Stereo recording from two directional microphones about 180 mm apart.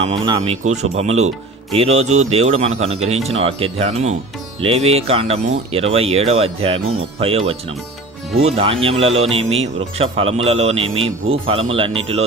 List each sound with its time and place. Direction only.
0.4 s speech: 40° right (ahead or behind)